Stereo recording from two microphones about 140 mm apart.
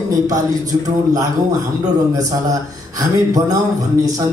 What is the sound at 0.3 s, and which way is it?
Speech, 25° right (ahead or behind).